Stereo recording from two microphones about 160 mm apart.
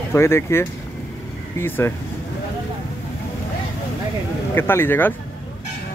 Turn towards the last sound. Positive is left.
turn(degrees=15)  # may be behind; listen again after turning